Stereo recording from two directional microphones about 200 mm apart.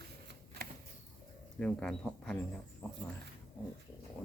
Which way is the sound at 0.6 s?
55° right (ahead or behind).